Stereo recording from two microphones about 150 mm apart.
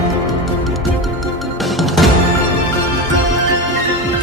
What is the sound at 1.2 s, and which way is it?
Music, centre (ahead or behind).